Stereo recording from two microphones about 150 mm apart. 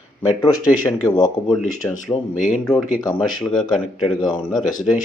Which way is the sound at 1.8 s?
15° left (ahead or behind).